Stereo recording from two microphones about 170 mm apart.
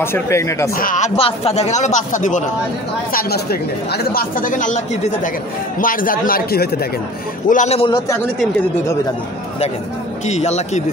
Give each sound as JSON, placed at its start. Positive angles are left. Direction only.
{"t": 0.0, "sound": "speech", "side_deg": 15}
{"t": 0.7, "sound": "speech", "side_deg": 50}
{"t": 3.1, "sound": "speech", "side_deg": 65}
{"t": 7.4, "sound": "speech", "side_deg": 45}
{"t": 10.2, "sound": "a man's voice", "side_deg": 40}